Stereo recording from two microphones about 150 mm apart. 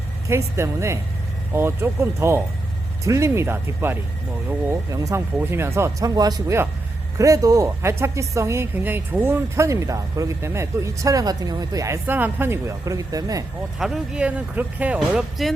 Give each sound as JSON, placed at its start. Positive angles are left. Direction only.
{"t": 0.3, "sound": "speech", "side_deg": -20}
{"t": 13.7, "sound": "speech", "side_deg": -5}